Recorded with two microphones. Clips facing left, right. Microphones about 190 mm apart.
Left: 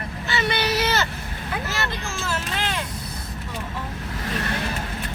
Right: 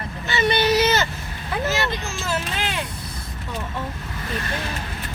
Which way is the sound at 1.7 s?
20° right (ahead or behind).